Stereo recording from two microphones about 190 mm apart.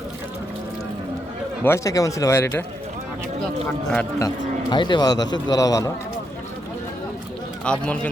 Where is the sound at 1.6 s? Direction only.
15° left (ahead or behind).